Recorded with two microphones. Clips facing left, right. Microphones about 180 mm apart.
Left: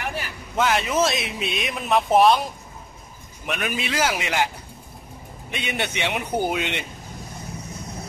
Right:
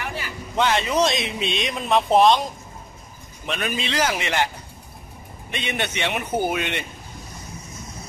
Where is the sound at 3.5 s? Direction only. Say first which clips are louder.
Even; 10° left (ahead or behind).